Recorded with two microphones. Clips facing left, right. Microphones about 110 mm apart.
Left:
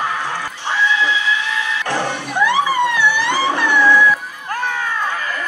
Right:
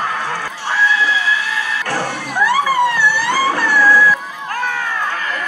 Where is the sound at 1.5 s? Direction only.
40° right (ahead or behind).